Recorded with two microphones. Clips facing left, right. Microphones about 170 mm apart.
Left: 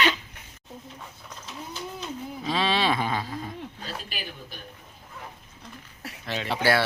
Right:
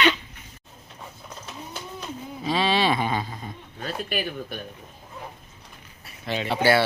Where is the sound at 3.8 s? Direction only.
55° right (ahead or behind).